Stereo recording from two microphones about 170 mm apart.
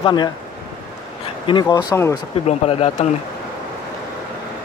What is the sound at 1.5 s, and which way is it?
Speech, 25° left (ahead or behind).